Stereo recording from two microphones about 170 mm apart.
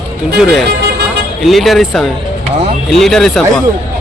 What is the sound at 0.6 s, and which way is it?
Speech, 75° right (ahead or behind).